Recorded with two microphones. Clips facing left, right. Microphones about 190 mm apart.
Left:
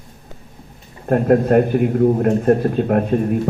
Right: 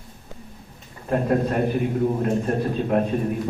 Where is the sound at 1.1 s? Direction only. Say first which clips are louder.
Left 7 dB; 55° left (ahead or behind).